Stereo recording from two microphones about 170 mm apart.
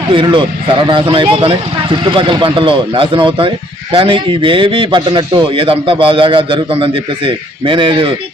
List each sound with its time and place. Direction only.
0.1 s a man's voice: 30° right (ahead or behind)